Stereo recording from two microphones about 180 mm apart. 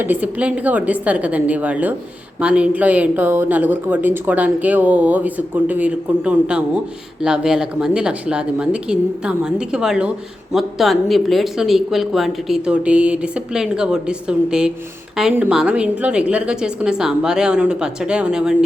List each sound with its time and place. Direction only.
0.0 s speech: 10° right (ahead or behind)